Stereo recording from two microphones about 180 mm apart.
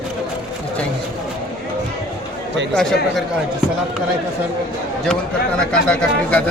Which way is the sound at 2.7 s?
Centre (ahead or behind).